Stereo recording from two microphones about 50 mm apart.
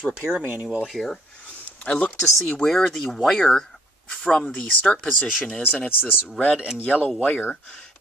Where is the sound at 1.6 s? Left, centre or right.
Left.